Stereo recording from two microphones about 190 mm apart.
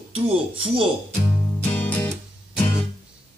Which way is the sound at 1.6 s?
10° left (ahead or behind).